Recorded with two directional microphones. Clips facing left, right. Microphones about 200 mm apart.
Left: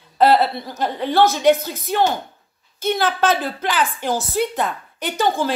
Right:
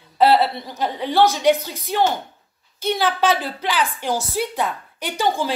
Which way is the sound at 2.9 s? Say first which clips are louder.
Even; 10° right (ahead or behind).